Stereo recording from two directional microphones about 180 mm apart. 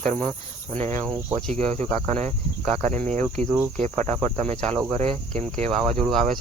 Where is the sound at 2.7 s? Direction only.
40° right (ahead or behind).